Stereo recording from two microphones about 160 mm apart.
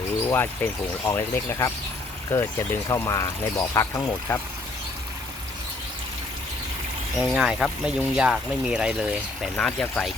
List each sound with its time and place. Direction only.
0.3 s speech: 15° left (ahead or behind)
7.2 s speech: 5° right (ahead or behind)
9.6 s speech: 5° left (ahead or behind)